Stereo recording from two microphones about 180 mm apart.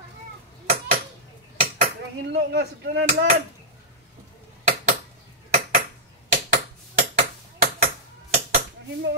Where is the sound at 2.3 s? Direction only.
65° right (ahead or behind).